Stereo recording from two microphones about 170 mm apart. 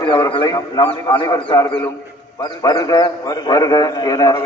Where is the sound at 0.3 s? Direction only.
25° left (ahead or behind).